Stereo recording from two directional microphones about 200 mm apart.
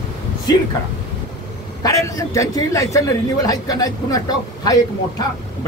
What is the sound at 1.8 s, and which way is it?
A man's voice, 15° left (ahead or behind).